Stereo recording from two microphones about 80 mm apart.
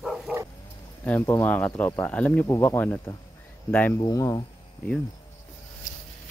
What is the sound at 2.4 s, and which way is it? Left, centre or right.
Speech, left.